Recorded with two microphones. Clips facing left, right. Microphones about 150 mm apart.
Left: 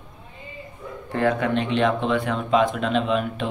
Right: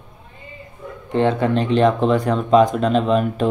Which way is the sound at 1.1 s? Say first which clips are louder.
Right 4 dB; 30° right (ahead or behind).